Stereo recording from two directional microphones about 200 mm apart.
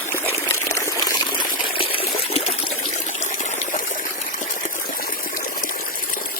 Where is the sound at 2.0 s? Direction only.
30° left (ahead or behind).